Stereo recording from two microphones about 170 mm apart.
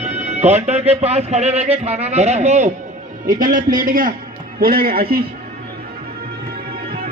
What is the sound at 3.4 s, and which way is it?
A man's voice, 55° right (ahead or behind).